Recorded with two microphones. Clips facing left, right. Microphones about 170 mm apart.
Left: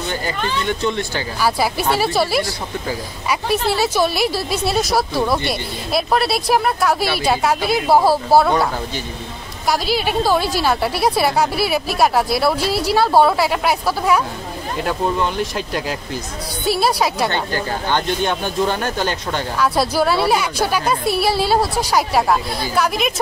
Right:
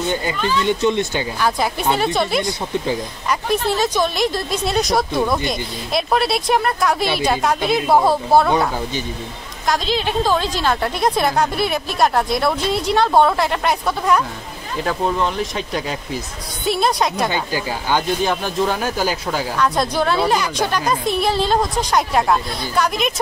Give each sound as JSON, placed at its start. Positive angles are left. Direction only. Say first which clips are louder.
{"t": 0.7, "sound": "speech", "louder": "right 3 dB", "side_deg": -20}
{"t": 1.4, "sound": "speech", "louder": "left 2 dB", "side_deg": 5}
{"t": 9.7, "sound": "speech", "louder": "left 1 dB", "side_deg": 10}
{"t": 17.6, "sound": "speech", "louder": "right 2 dB", "side_deg": -10}